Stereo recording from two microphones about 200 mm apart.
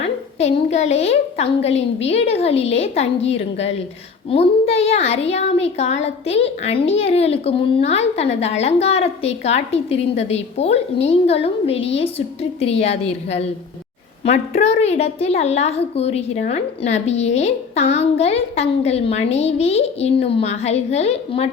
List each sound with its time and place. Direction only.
0.0 s speech: 30° left (ahead or behind)
4.3 s speech: 30° left (ahead or behind)